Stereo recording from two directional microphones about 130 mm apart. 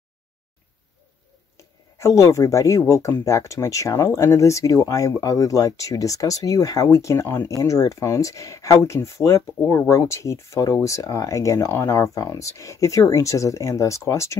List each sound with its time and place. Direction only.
2.0 s speech: 20° left (ahead or behind)